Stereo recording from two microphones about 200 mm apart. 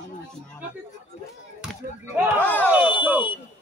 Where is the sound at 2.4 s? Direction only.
10° left (ahead or behind).